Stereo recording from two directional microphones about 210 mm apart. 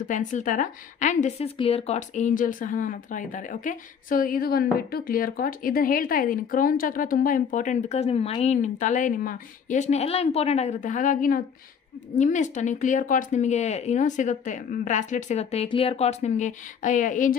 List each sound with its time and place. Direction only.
0.0 s speech: 35° left (ahead or behind)